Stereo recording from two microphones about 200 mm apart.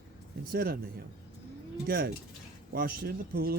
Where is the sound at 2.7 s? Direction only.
50° right (ahead or behind).